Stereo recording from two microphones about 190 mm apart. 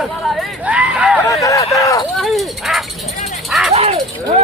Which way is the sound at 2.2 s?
Centre (ahead or behind).